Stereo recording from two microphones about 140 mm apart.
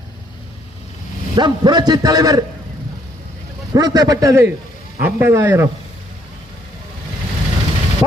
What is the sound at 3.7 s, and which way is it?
A man's voice, 30° right (ahead or behind).